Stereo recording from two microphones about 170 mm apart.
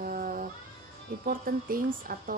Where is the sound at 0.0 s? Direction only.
55° right (ahead or behind).